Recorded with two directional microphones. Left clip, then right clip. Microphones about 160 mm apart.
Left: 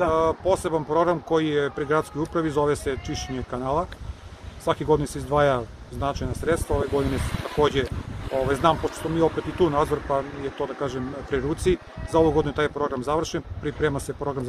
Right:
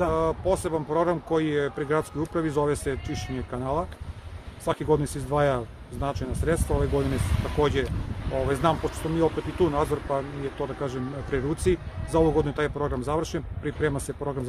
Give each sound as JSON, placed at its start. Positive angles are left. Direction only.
{"t": 0.0, "sound": "speech", "side_deg": 0}
{"t": 7.1, "sound": "speech", "side_deg": 60}
{"t": 7.5, "sound": "speech", "side_deg": 0}